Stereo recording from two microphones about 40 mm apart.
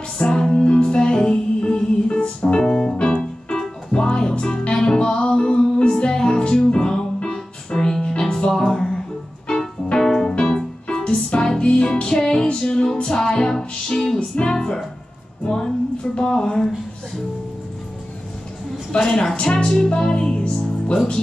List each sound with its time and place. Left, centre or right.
0.2 s music: left
7.3 s music: centre
10.3 s music: left
13.0 s music: centre
15.4 s a sound: left
18.9 s a woman's voice: centre
20.0 s music: left